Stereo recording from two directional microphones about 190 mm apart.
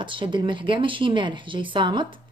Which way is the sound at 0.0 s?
25° right (ahead or behind).